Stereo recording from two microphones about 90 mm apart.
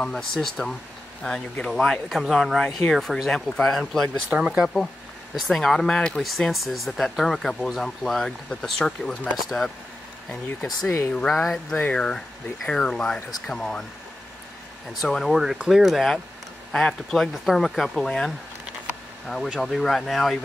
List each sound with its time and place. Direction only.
0.0 s speech: 5° left (ahead or behind)
4.3 s speech: 10° right (ahead or behind)
5.3 s speech: 5° left (ahead or behind)
10.9 s speech: 30° left (ahead or behind)
12.6 s speech: 10° left (ahead or behind)
14.9 s speech: 5° left (ahead or behind)